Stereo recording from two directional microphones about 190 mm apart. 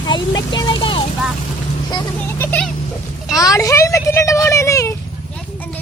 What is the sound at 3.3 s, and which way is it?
Speech, 20° left (ahead or behind).